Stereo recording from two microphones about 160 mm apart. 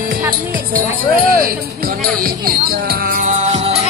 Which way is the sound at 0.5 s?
65° right (ahead or behind).